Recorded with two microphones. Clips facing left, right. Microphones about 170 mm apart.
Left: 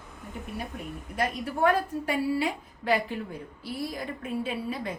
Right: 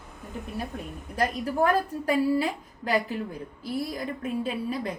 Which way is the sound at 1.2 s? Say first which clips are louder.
Right 1 dB; 35° right (ahead or behind).